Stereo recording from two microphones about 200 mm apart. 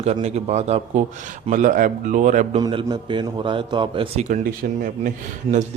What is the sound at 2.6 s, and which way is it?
A man's voice, 20° right (ahead or behind).